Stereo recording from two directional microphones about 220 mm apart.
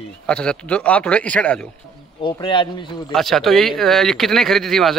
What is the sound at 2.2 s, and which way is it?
Speech, 20° left (ahead or behind).